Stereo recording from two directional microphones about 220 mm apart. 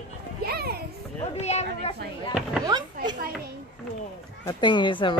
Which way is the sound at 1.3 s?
30° left (ahead or behind).